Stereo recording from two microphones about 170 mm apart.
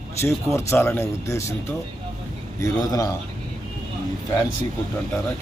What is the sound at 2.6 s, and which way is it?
Speech, 20° left (ahead or behind).